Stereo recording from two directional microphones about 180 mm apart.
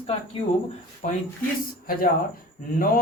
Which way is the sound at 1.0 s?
45° left (ahead or behind).